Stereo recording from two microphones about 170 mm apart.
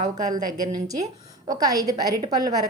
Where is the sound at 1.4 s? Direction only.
20° right (ahead or behind).